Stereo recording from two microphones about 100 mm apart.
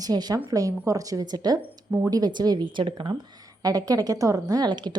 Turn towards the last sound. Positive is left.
turn(degrees=-45)  # may be behind; listen again after turning